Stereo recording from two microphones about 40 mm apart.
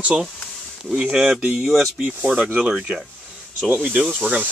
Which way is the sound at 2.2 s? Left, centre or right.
Right.